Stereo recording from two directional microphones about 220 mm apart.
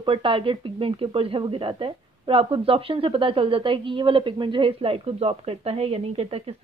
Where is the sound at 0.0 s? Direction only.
25° right (ahead or behind).